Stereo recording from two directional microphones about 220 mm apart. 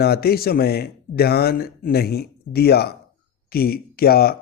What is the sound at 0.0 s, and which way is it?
A man's voice, 45° left (ahead or behind).